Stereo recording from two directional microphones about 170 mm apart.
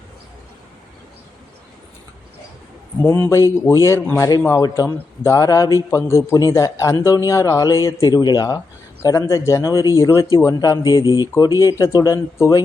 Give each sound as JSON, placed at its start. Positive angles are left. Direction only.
{"t": 3.2, "sound": "a man's voice", "side_deg": 15}